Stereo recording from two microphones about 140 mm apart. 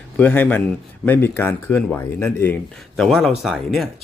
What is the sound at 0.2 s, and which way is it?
Speech, 10° left (ahead or behind).